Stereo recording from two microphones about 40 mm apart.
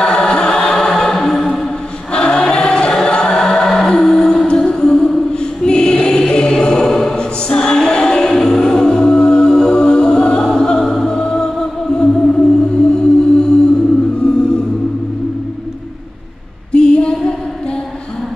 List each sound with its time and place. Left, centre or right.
0.0 s choir: centre
2.1 s choir: left
3.1 s music: centre
5.7 s choir: centre
7.2 s music: left
16.7 s a sound: left